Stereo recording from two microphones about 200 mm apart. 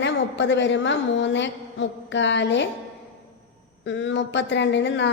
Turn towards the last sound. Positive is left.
turn(degrees=60)  # may be behind; listen again after turning